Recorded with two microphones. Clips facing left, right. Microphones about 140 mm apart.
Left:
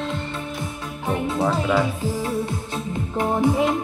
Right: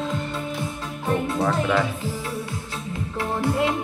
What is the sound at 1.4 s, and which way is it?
Speech, 5° left (ahead or behind).